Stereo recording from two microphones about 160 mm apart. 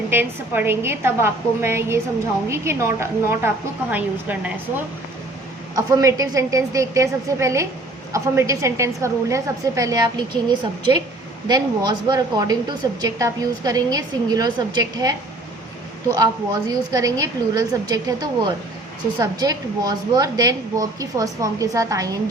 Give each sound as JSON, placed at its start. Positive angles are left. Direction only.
{"t": 0.1, "sound": "a woman's voice", "side_deg": -15}
{"t": 5.7, "sound": "a woman's voice", "side_deg": -20}